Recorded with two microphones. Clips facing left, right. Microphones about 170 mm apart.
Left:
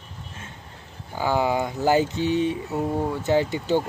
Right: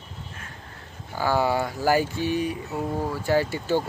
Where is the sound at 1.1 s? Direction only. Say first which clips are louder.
Even; 15° left (ahead or behind).